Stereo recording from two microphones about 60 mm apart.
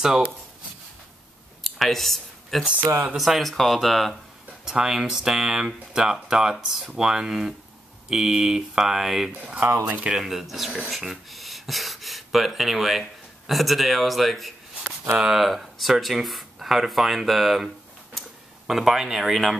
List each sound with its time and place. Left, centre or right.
0.0 s speech: centre
1.6 s a sound: centre
2.6 s speech: right
3.2 s speech: centre
4.6 s speech: centre
9.8 s speech: right
10.1 s a man's voice: centre
18.7 s speech: centre